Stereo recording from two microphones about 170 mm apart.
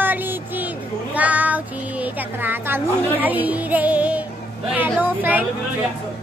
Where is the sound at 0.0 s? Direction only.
10° right (ahead or behind).